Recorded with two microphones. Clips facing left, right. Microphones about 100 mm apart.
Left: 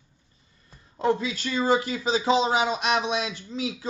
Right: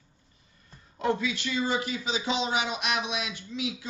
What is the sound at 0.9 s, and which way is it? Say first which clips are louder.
Speech: left 3 dB; 30° left (ahead or behind).